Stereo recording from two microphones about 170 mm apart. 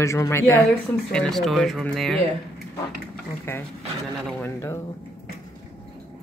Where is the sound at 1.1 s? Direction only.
Centre (ahead or behind).